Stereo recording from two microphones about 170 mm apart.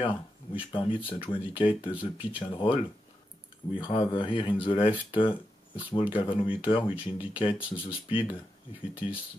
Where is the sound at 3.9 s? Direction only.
30° left (ahead or behind).